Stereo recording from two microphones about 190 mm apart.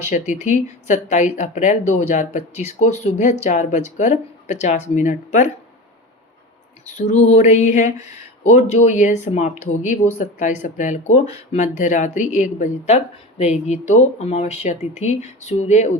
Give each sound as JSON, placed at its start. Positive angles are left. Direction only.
{"t": 0.1, "sound": "speech", "side_deg": 40}
{"t": 6.8, "sound": "speech", "side_deg": 35}